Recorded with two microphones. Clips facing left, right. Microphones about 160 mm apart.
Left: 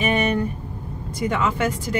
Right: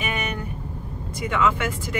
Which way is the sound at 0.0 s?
35° left (ahead or behind).